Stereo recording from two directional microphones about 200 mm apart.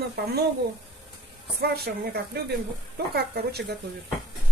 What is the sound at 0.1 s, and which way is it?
Speech, 50° right (ahead or behind).